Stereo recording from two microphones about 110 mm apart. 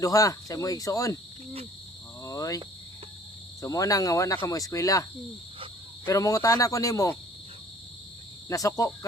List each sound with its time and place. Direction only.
0.0 s speech: 30° left (ahead or behind)
2.2 s cricket: 30° left (ahead or behind)
3.6 s speech: 30° left (ahead or behind)
6.1 s speech: 30° left (ahead or behind)
8.4 s speech: 30° left (ahead or behind)